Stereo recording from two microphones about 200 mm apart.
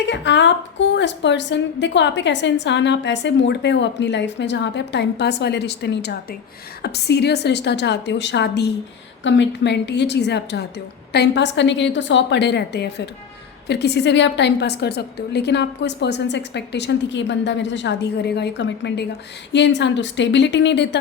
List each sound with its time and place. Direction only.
0.0 s a woman's voice: 60° left (ahead or behind)